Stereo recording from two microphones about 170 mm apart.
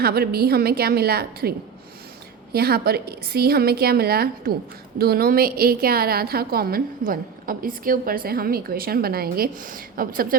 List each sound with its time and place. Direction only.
0.0 s a woman's voice: 65° right (ahead or behind)